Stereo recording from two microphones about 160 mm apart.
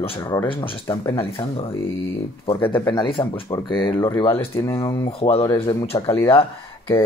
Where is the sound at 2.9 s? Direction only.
30° left (ahead or behind).